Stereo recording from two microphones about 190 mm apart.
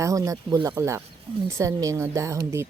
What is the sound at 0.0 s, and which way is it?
Speech, 15° right (ahead or behind).